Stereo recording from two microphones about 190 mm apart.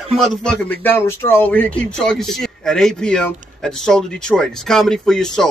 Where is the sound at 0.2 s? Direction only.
5° left (ahead or behind).